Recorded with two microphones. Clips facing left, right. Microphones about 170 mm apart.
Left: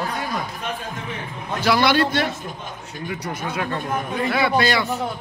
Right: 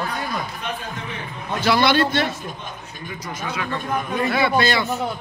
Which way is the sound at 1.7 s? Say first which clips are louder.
Even; 10° left (ahead or behind).